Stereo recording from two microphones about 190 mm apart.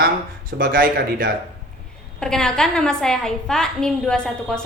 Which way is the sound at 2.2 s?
5° left (ahead or behind).